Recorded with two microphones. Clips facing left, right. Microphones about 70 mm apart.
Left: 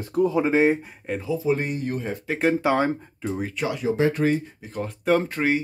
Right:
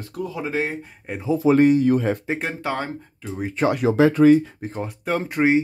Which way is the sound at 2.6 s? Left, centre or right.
Centre.